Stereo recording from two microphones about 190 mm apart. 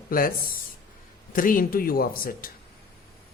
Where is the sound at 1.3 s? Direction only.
45° left (ahead or behind).